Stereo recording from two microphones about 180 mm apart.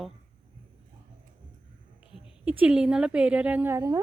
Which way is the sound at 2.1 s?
5° right (ahead or behind).